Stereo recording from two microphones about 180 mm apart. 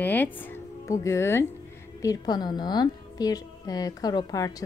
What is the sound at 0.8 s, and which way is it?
A woman's voice, 15° left (ahead or behind).